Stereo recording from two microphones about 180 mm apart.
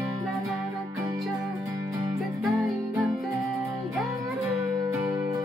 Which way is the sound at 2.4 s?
Centre (ahead or behind).